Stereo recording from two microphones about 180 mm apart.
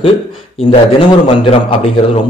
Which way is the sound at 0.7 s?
25° left (ahead or behind).